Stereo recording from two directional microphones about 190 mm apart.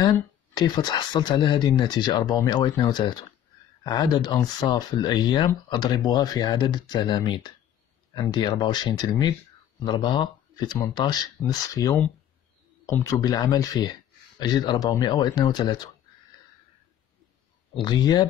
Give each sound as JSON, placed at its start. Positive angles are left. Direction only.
{"t": 0.0, "sound": "speech", "side_deg": 20}
{"t": 17.7, "sound": "speech", "side_deg": 25}